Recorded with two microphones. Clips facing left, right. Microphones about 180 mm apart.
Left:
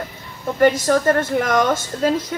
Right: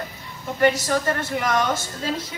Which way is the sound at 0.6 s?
50° left (ahead or behind).